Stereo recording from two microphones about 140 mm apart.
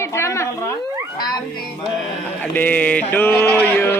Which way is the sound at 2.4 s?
15° left (ahead or behind).